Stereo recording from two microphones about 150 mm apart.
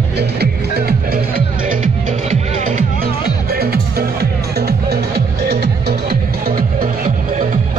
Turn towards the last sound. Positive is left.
turn(degrees=-75)  # may be behind; listen again after turning